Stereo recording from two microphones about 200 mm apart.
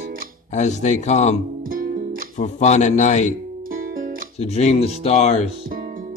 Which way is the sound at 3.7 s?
45° right (ahead or behind).